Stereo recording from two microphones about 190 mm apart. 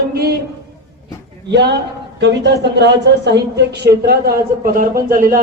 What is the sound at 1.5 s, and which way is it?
A woman's voice, 60° right (ahead or behind).